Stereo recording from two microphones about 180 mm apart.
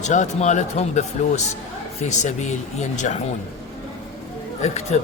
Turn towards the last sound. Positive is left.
turn(degrees=40)  # may be behind; listen again after turning